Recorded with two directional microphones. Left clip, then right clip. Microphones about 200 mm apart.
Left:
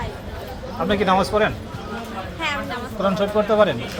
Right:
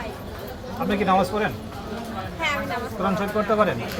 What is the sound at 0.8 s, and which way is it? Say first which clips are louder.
Speech: left 2 dB; 50° left (ahead or behind).